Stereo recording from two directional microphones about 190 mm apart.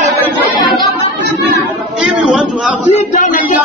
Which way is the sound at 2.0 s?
Centre (ahead or behind).